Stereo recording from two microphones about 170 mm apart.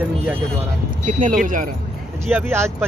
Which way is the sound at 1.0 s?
50° right (ahead or behind).